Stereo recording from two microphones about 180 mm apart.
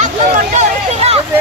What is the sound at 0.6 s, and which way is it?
Speech, 35° right (ahead or behind).